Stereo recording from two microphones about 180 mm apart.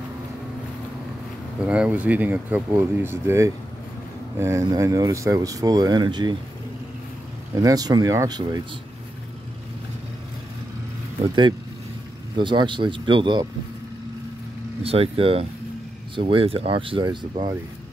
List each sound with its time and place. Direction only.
1.6 s speech: 5° right (ahead or behind); by 6.3 s 25° right (ahead or behind)
7.5 s speech: 20° right (ahead or behind)
12.4 s speech: 25° right (ahead or behind)
14.8 s speech: 35° right (ahead or behind)